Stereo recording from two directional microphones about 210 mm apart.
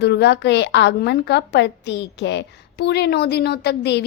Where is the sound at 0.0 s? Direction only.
55° left (ahead or behind).